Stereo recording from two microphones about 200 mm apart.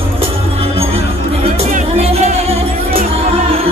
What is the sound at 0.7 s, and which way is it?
Music, 30° right (ahead or behind).